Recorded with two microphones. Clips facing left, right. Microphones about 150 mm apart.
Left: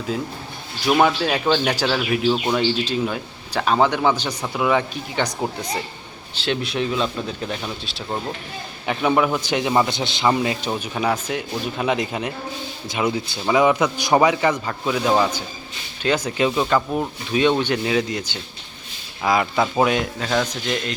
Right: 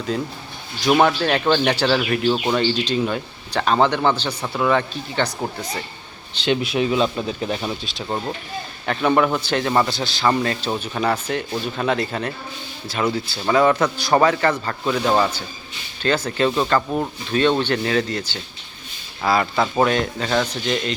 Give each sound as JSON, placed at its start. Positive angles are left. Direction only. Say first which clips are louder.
{"t": 0.1, "sound": "speech", "louder": "right 1 dB", "side_deg": 5}
{"t": 4.3, "sound": "speech", "louder": "right 1 dB", "side_deg": 0}
{"t": 4.7, "sound": "speech", "louder": "even", "side_deg": 10}
{"t": 6.3, "sound": "speech", "louder": "right 3 dB", "side_deg": 0}
{"t": 10.2, "sound": "speech", "louder": "even", "side_deg": 10}